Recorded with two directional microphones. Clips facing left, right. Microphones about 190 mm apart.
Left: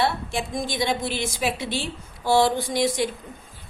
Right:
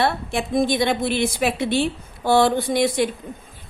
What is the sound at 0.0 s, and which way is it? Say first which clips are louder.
A woman's voice: right 3 dB; 60° right (ahead or behind).